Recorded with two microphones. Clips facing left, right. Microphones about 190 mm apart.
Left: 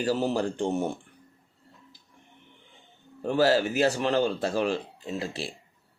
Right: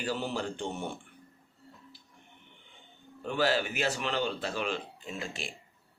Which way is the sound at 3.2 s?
40° left (ahead or behind).